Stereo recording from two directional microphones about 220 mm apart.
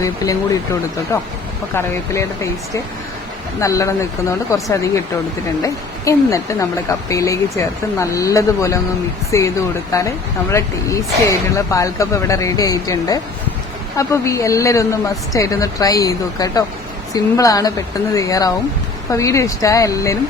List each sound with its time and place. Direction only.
0.0 s a woman's voice: 15° left (ahead or behind)